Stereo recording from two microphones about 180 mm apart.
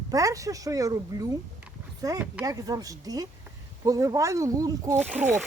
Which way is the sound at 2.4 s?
20° right (ahead or behind).